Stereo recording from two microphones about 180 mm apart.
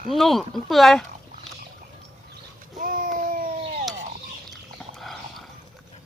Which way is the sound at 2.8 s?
50° right (ahead or behind).